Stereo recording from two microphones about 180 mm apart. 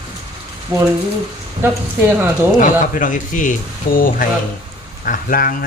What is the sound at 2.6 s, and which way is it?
Speech, 45° left (ahead or behind).